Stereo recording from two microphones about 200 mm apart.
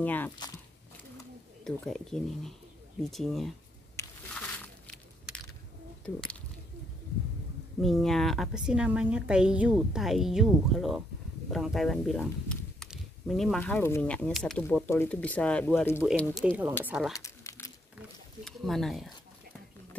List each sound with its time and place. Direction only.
0.0 s speech: 10° left (ahead or behind)
1.6 s speech: centre (ahead or behind)
3.9 s crushing: 5° left (ahead or behind)
7.8 s speech: centre (ahead or behind)
16.4 s speech: 10° right (ahead or behind)
17.1 s crumpling: 15° left (ahead or behind)
18.4 s speech: centre (ahead or behind)